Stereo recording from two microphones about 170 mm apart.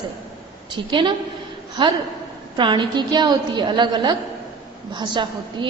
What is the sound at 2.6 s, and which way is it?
A woman's voice, 25° right (ahead or behind).